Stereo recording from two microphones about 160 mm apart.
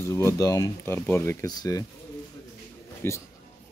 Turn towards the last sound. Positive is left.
turn(degrees=15)  # may be behind; listen again after turning